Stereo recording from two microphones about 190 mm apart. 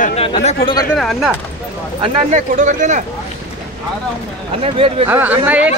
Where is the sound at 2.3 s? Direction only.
40° right (ahead or behind).